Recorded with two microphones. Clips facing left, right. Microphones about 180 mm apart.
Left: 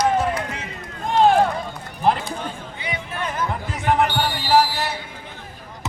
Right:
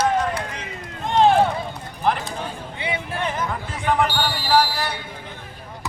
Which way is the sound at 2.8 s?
30° right (ahead or behind).